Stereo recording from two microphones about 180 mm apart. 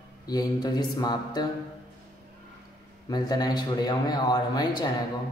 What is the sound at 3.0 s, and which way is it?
A man's voice, 20° left (ahead or behind).